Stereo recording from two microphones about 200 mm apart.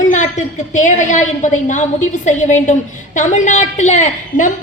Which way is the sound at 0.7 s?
35° left (ahead or behind).